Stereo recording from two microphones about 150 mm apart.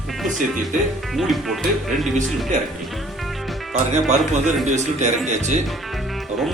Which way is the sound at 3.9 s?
50° right (ahead or behind).